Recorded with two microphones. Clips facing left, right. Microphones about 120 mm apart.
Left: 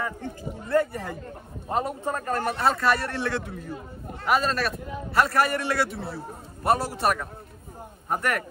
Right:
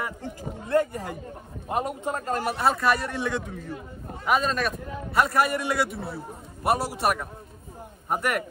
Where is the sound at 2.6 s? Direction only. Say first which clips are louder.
Even; centre (ahead or behind).